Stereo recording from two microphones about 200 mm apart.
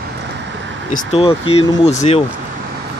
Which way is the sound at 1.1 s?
25° left (ahead or behind).